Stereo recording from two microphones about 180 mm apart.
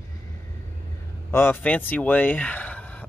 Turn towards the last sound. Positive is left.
turn(degrees=5)  # may be behind; listen again after turning